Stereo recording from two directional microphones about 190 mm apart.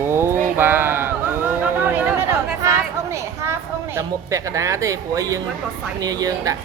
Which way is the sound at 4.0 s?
15° right (ahead or behind).